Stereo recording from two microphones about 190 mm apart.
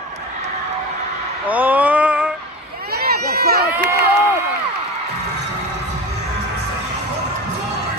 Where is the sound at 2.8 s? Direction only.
55° right (ahead or behind).